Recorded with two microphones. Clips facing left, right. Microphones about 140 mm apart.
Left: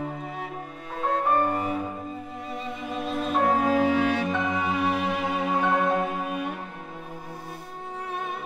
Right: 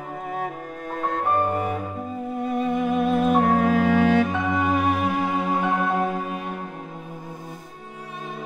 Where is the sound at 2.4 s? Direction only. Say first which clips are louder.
Right 14 dB; 55° right (ahead or behind).